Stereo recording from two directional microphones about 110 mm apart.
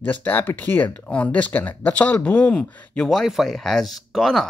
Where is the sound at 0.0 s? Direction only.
15° left (ahead or behind).